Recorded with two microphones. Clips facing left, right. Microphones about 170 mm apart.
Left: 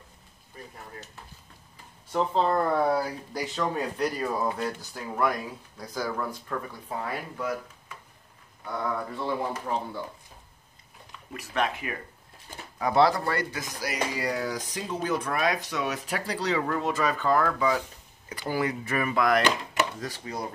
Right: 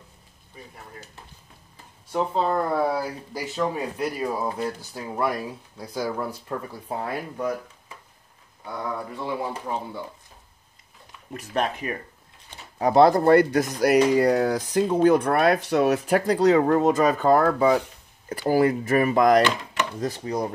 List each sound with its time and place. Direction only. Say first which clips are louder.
2.1 s speech: right 1 dB; 5° right (ahead or behind); by 6.2 s 25° right (ahead or behind)
6.7 s speech: right 4 dB; 35° right (ahead or behind)
8.6 s speech: even; 10° right (ahead or behind)
11.3 s speech: right 3 dB; 40° right (ahead or behind)